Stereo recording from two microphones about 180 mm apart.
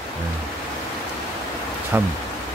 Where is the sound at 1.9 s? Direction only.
10° right (ahead or behind).